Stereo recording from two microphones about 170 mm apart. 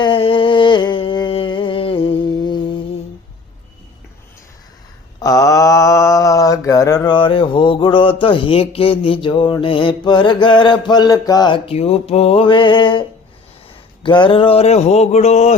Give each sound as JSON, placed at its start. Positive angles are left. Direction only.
{"t": 0.0, "sound": "a sound", "side_deg": 30}
{"t": 5.2, "sound": "mantra", "side_deg": 20}
{"t": 14.0, "sound": "speech", "side_deg": 30}